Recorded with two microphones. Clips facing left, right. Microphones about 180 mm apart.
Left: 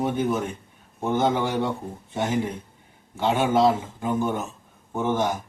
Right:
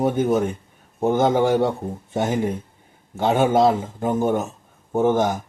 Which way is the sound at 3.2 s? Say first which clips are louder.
Right 3 dB; 50° right (ahead or behind).